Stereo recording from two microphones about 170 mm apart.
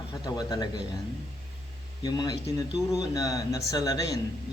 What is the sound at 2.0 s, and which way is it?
Speech, 25° left (ahead or behind).